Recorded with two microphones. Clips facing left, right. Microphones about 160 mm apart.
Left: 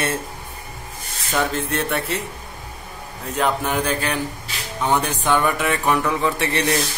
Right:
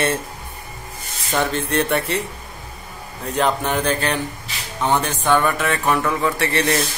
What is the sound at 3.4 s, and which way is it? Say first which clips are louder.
Speech: right 1 dB; 5° left (ahead or behind).